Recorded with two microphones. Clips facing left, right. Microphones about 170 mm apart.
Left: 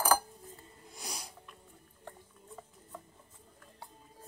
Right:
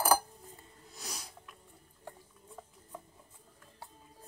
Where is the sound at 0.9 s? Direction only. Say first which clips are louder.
Left 1 dB; 10° left (ahead or behind).